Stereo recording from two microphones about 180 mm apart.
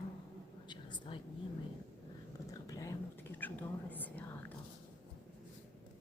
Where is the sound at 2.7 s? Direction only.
20° left (ahead or behind).